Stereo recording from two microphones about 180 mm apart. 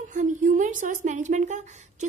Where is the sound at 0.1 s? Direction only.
45° right (ahead or behind).